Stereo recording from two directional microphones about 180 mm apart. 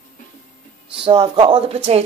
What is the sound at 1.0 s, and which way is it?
Speech, 25° right (ahead or behind).